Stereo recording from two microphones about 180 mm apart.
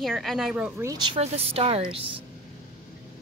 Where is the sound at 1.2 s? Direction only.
35° right (ahead or behind).